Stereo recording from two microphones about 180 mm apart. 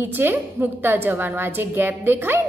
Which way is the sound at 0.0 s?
10° right (ahead or behind).